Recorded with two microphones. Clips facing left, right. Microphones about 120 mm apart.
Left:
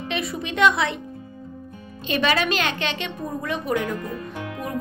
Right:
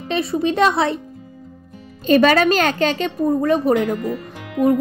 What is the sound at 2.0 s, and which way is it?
A woman's voice, 45° right (ahead or behind).